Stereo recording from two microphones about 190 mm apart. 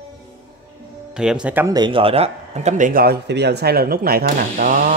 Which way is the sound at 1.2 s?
5° right (ahead or behind).